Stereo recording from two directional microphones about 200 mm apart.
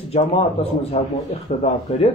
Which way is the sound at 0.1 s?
30° left (ahead or behind).